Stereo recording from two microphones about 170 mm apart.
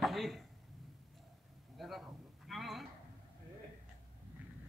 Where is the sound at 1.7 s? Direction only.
Centre (ahead or behind).